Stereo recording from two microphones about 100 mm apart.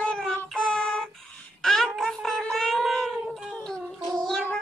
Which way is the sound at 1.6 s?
5° left (ahead or behind).